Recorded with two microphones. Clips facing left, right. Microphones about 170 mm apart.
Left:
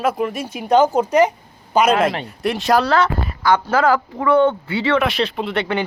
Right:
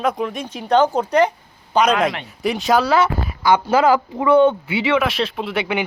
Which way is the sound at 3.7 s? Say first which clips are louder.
Right 1 dB; 20° right (ahead or behind).